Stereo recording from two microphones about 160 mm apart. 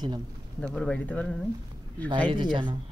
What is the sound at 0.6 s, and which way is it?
Speech, 5° left (ahead or behind).